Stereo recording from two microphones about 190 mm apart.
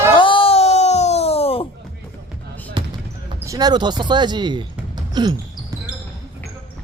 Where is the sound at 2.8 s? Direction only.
25° right (ahead or behind).